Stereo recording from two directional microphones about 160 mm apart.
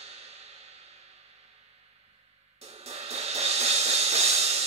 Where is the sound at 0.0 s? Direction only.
40° right (ahead or behind).